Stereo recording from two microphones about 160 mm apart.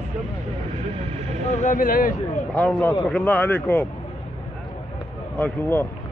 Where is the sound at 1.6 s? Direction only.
55° left (ahead or behind).